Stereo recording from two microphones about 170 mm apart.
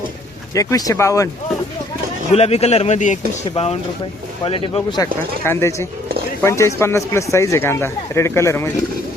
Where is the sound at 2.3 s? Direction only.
40° left (ahead or behind).